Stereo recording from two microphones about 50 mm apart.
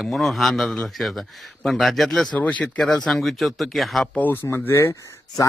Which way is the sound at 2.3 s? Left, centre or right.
Left.